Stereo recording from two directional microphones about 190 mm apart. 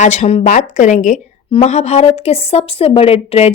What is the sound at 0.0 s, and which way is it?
Speech, 35° left (ahead or behind).